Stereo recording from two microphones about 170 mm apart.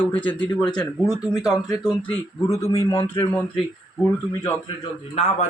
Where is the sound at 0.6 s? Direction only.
25° left (ahead or behind).